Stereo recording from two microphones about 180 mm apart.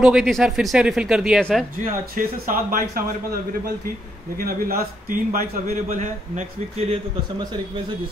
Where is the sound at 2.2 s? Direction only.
50° right (ahead or behind).